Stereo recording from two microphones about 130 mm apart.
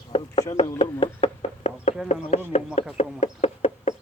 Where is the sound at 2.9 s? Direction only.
55° left (ahead or behind).